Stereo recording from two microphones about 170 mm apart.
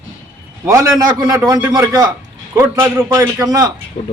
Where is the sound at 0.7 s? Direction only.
20° right (ahead or behind).